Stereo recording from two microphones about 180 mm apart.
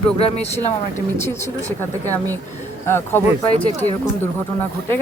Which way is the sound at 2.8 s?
15° left (ahead or behind).